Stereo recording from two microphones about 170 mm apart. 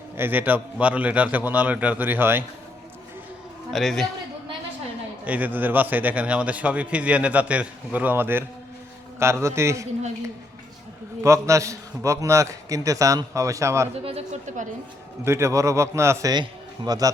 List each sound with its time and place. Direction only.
0.2 s a man's voice: 10° right (ahead or behind)
3.7 s a man's voice: centre (ahead or behind)
5.2 s a man's voice: 10° right (ahead or behind)
11.2 s a man's voice: 15° right (ahead or behind)
14.0 s speech: 35° right (ahead or behind)
15.2 s a man's voice: 15° right (ahead or behind)